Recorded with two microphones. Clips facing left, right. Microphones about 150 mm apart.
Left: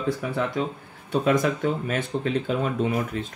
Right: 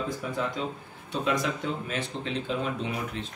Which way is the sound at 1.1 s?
50° left (ahead or behind).